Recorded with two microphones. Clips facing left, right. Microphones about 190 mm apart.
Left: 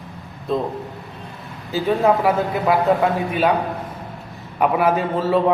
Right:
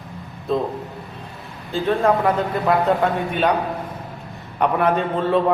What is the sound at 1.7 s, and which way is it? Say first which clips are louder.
A man's voice: left 1 dB; 5° left (ahead or behind).